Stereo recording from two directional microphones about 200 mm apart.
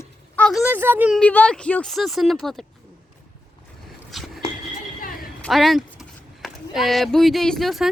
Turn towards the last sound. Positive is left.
turn(degrees=0)  # may be behind; listen again after turning